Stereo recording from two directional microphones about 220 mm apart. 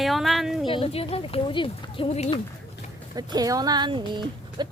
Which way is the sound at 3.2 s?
20° right (ahead or behind).